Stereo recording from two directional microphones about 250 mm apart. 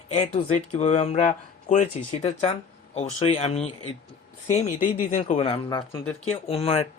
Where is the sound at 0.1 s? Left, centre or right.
Left.